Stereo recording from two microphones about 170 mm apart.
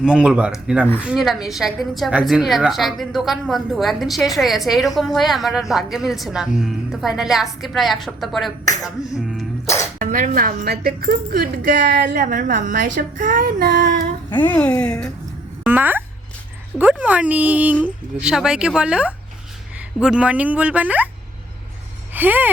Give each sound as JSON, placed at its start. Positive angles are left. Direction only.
{"t": 0.0, "sound": "a woman's voice", "side_deg": -5}
{"t": 8.6, "sound": "music", "side_deg": 20}
{"t": 10.0, "sound": "a woman's voice", "side_deg": -50}
{"t": 14.3, "sound": "a woman's voice", "side_deg": 10}
{"t": 15.6, "sound": "a woman's voice", "side_deg": -10}
{"t": 22.1, "sound": "a sound", "side_deg": -10}